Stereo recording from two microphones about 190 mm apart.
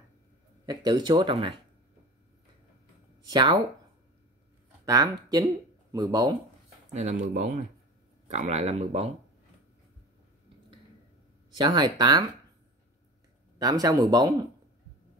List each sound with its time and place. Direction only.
0.7 s speech: 20° right (ahead or behind)
3.3 s speech: 25° right (ahead or behind)
4.8 s speech: 20° right (ahead or behind)
6.9 s speech: 35° right (ahead or behind)
11.5 s speech: 25° right (ahead or behind)
13.6 s speech: 20° right (ahead or behind)